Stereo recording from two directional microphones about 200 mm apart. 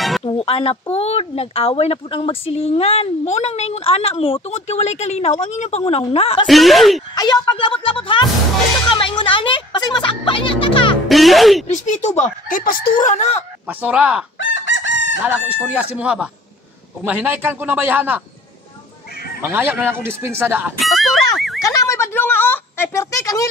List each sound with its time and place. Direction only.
0.2 s a sound: 25° left (ahead or behind)
0.9 s a woman's voice: 30° left (ahead or behind)
6.4 s speech: centre (ahead or behind)
7.2 s speech: 20° left (ahead or behind)
11.1 s speech: centre (ahead or behind)
11.6 s a woman's voice: 35° left (ahead or behind)
13.7 s speech: 10° right (ahead or behind)
14.4 s chicken: 65° left (ahead or behind)
15.2 s speech: 5° right (ahead or behind)
19.4 s speech: 10° right (ahead or behind)
21.5 s a sound: 15° left (ahead or behind)